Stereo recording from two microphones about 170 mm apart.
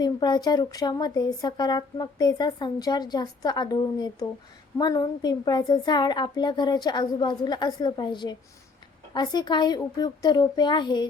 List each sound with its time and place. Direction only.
0.0 s speech: 25° left (ahead or behind)